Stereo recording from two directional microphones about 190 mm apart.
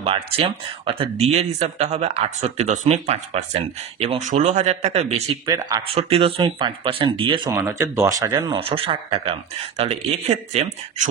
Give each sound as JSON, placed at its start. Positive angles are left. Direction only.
{"t": 0.0, "sound": "speech", "side_deg": -30}
{"t": 5.5, "sound": "speech", "side_deg": -20}
{"t": 5.9, "sound": "speech", "side_deg": -30}
{"t": 7.6, "sound": "speech", "side_deg": -10}
{"t": 8.5, "sound": "speech", "side_deg": -30}